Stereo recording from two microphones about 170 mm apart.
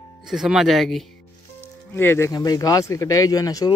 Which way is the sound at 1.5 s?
10° left (ahead or behind).